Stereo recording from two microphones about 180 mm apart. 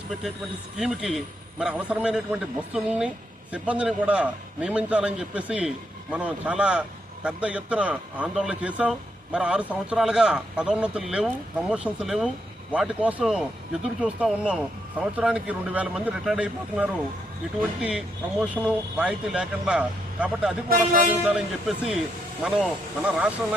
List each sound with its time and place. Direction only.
0.8 s a man's voice: centre (ahead or behind)
20.7 s speech: 50° right (ahead or behind)
21.2 s speech: 5° right (ahead or behind)